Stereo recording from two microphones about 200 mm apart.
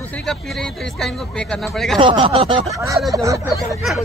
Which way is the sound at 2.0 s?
25° right (ahead or behind).